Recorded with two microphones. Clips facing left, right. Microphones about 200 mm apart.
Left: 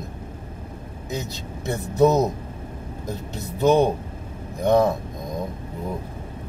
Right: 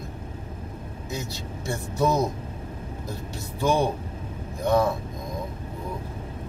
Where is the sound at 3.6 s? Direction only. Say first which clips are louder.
Left 6 dB; 20° left (ahead or behind).